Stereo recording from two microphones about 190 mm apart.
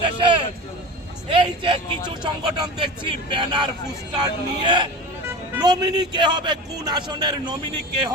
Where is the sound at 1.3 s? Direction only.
25° right (ahead or behind).